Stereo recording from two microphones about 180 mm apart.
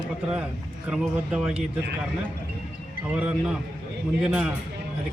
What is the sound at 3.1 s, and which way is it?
A man's voice, 5° right (ahead or behind).